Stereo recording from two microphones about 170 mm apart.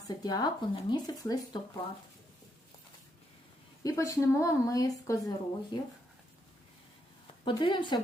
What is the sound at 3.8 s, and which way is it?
Speech, 20° left (ahead or behind).